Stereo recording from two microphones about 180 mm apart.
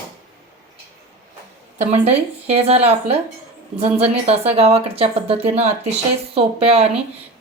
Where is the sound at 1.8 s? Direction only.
35° right (ahead or behind).